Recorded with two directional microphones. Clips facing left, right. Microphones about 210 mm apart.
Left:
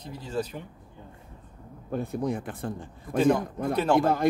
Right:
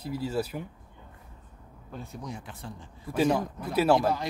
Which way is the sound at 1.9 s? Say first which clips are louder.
Left 11 dB; 55° left (ahead or behind).